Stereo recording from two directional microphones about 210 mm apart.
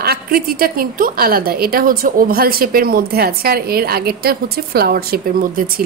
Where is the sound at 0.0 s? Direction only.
45° right (ahead or behind).